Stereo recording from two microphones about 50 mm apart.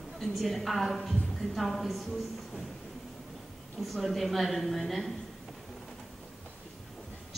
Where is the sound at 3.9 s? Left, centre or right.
Centre.